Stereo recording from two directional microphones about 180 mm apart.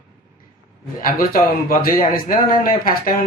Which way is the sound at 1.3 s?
55° left (ahead or behind).